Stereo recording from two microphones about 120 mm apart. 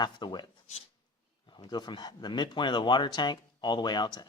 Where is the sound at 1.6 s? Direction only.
35° left (ahead or behind).